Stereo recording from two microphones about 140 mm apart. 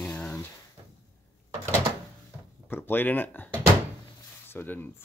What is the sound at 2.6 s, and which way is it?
Speech, 15° left (ahead or behind).